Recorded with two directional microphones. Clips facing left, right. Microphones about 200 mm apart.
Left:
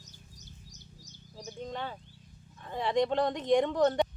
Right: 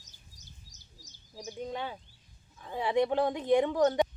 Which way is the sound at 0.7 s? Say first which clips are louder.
Left 8 dB; 60° left (ahead or behind).